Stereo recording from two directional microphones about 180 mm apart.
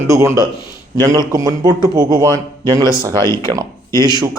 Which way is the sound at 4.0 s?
20° right (ahead or behind).